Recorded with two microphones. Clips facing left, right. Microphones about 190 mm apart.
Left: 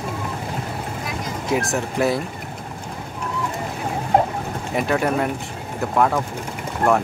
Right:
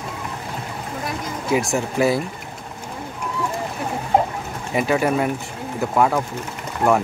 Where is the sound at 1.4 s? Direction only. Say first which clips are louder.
Right 2 dB; centre (ahead or behind).